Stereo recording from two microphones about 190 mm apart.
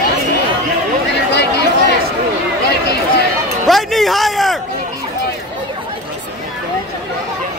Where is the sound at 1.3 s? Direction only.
60° left (ahead or behind).